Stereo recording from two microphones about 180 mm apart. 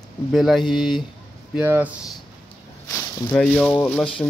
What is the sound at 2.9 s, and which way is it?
Snake, 15° left (ahead or behind).